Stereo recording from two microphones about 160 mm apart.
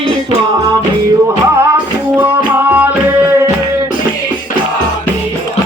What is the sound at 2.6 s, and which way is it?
Music, 10° right (ahead or behind).